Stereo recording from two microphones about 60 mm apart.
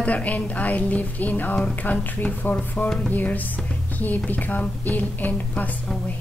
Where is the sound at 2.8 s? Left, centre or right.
Centre.